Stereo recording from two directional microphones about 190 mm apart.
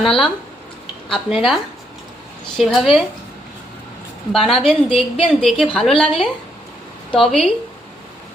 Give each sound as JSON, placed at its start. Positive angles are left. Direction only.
{"t": 0.0, "sound": "a woman's voice", "side_deg": 0}
{"t": 2.6, "sound": "a woman's voice", "side_deg": 0}
{"t": 4.3, "sound": "a woman's voice", "side_deg": 0}